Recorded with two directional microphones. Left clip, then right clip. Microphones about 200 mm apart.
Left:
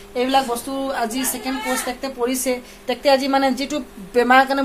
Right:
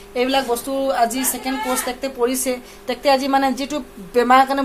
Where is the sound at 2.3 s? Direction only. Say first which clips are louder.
Left 1 dB; centre (ahead or behind).